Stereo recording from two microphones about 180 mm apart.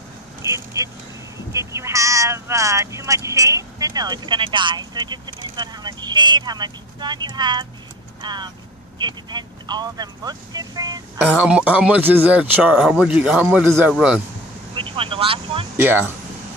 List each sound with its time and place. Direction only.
0.4 s speech: 15° right (ahead or behind)
11.2 s speech: 5° right (ahead or behind)
14.8 s vehicle: 30° right (ahead or behind)
15.8 s speech: 10° right (ahead or behind)